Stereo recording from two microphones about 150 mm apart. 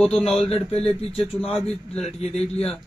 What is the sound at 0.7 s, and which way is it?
A man's voice, 40° left (ahead or behind).